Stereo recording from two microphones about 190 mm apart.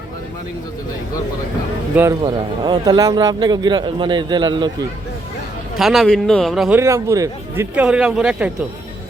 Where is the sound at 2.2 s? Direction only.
25° right (ahead or behind).